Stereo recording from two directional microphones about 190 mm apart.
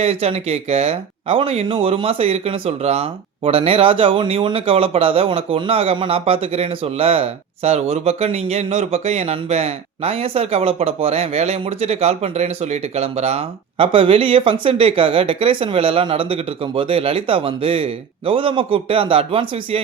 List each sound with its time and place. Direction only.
0.0 s speech: 30° right (ahead or behind)